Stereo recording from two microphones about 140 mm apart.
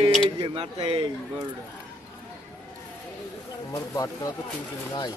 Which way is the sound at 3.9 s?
25° left (ahead or behind).